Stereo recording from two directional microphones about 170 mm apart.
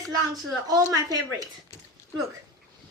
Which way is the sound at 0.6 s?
20° right (ahead or behind).